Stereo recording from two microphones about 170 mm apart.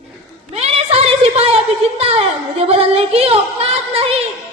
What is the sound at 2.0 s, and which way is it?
Music, 35° right (ahead or behind).